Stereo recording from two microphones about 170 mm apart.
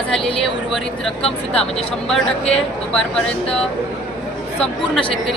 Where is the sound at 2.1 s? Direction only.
5° left (ahead or behind).